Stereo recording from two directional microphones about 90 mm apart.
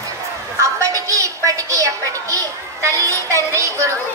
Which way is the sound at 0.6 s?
35° right (ahead or behind).